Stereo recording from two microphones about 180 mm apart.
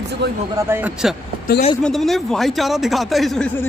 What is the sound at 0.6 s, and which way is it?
Speech, 10° right (ahead or behind).